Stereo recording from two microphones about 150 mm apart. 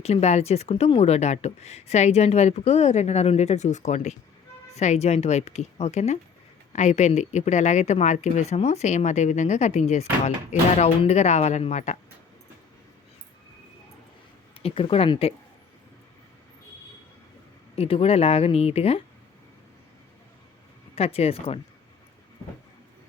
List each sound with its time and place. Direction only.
0.0 s speech: 45° left (ahead or behind)
14.6 s speech: 40° left (ahead or behind)
17.7 s speech: 40° left (ahead or behind)
20.9 s speech: 40° left (ahead or behind)